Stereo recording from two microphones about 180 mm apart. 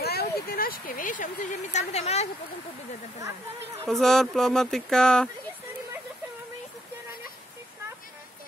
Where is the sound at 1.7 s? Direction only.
35° left (ahead or behind).